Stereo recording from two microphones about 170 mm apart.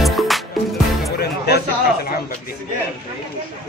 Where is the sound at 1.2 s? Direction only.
70° left (ahead or behind).